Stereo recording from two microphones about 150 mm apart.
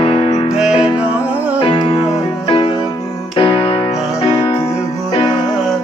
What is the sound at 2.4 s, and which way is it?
Music, 35° left (ahead or behind).